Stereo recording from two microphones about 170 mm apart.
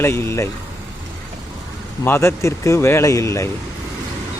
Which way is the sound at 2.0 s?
15° left (ahead or behind).